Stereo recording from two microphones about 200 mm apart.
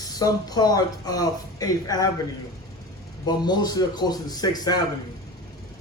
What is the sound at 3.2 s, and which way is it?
A man's voice, 20° left (ahead or behind).